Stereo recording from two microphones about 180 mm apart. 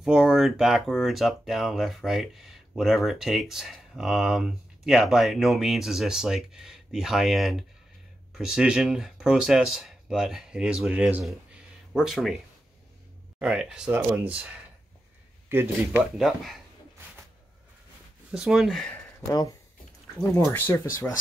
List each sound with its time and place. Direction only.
0.0 s speech: centre (ahead or behind)
13.4 s speech: 5° right (ahead or behind)
18.3 s speech: 5° right (ahead or behind)
19.2 s speech: 20° left (ahead or behind)